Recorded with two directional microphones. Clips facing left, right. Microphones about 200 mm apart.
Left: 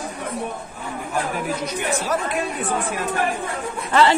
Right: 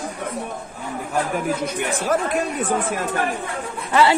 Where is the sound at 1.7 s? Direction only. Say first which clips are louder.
Right 2 dB; 55° right (ahead or behind).